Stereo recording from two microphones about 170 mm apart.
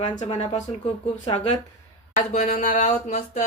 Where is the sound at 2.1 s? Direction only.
45° left (ahead or behind).